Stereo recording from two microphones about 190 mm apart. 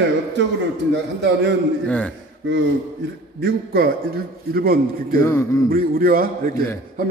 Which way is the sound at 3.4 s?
55° right (ahead or behind).